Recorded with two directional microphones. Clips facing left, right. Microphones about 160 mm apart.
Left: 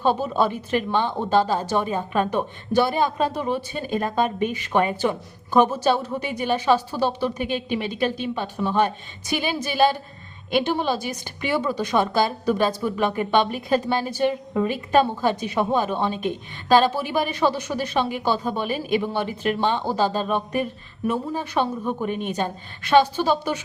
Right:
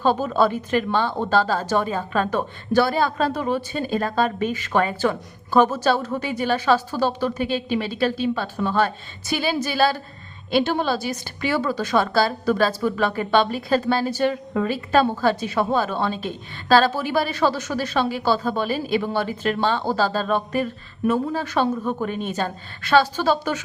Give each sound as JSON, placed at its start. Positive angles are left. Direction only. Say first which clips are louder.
{"t": 0.0, "sound": "a woman's voice", "louder": "right 2 dB", "side_deg": 15}
{"t": 7.4, "sound": "a woman's voice", "louder": "right 2 dB", "side_deg": -40}
{"t": 7.9, "sound": "a woman's voice", "louder": "right 4 dB", "side_deg": 15}